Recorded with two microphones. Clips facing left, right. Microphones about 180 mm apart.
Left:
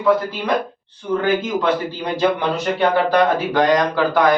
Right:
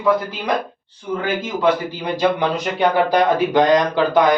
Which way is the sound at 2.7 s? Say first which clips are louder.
Even; 15° right (ahead or behind).